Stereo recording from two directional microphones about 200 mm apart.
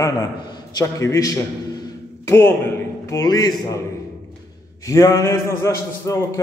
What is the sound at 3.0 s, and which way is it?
Speech, 15° left (ahead or behind).